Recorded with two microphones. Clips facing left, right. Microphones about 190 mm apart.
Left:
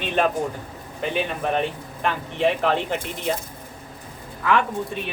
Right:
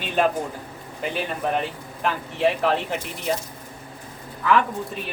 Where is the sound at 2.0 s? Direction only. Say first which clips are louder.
Even; 5° right (ahead or behind).